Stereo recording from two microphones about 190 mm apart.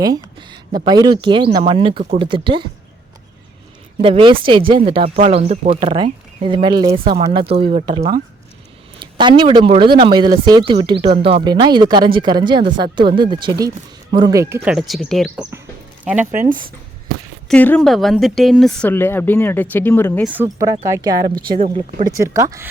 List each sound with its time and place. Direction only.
0.0 s speech: 20° right (ahead or behind)
4.0 s speech: 25° right (ahead or behind); by 16.3 s 10° right (ahead or behind)
16.3 s speech: 45° right (ahead or behind)
17.5 s a woman's voice: 5° left (ahead or behind)
20.3 s speech: 15° right (ahead or behind)
22.2 s speech: 15° right (ahead or behind)